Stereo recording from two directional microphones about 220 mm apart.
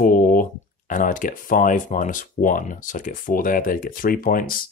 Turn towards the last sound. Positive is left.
turn(degrees=40)  # may be behind; listen again after turning